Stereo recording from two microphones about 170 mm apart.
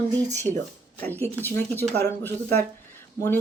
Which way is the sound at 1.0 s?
10° left (ahead or behind).